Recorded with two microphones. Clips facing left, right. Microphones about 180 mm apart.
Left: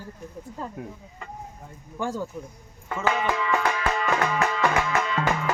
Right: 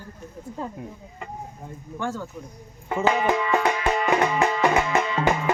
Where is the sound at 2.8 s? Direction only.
20° right (ahead or behind).